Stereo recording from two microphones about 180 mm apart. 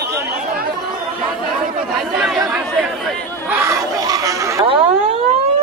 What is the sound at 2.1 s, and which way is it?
Speech, 5° right (ahead or behind).